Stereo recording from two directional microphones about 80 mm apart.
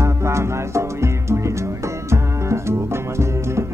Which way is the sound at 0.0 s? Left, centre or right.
Right.